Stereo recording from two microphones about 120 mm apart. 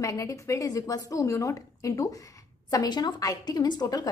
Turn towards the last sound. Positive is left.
turn(degrees=30)  # may be behind; listen again after turning